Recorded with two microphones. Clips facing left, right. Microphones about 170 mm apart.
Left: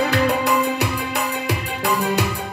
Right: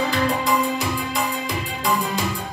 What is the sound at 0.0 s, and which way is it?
Music, 70° left (ahead or behind).